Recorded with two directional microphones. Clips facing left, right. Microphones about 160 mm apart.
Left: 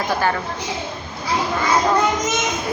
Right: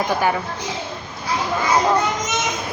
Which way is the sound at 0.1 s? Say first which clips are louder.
Left 1 dB; 15° right (ahead or behind).